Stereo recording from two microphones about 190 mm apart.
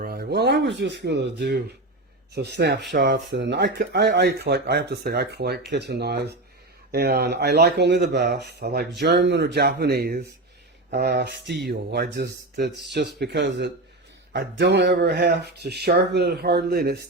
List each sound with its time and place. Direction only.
0.0 s speech: 55° right (ahead or behind)